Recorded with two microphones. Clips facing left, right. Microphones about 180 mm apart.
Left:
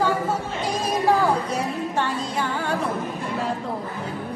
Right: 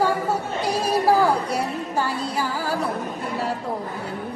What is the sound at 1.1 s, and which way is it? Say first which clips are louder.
Speech: right 1 dB; 10° right (ahead or behind).